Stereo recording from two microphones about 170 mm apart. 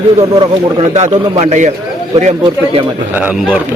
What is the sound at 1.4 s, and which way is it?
Speech, 40° right (ahead or behind).